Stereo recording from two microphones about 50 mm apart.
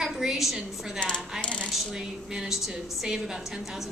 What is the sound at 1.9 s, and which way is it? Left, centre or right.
A woman's voice, centre.